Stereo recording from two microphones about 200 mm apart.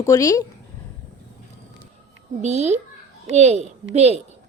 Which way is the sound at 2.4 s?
35° right (ahead or behind).